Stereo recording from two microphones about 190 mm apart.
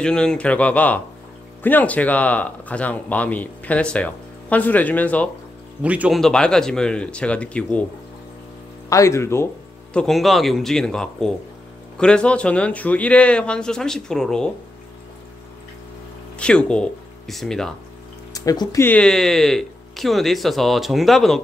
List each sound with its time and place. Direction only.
0.0 s speech: 5° left (ahead or behind)
5.8 s speech: 5° right (ahead or behind)
8.8 s speech: 15° left (ahead or behind)
9.9 s speech: centre (ahead or behind)
16.3 s speech: 5° left (ahead or behind)
18.3 s speech: 20° left (ahead or behind); by 21.4 s centre (ahead or behind)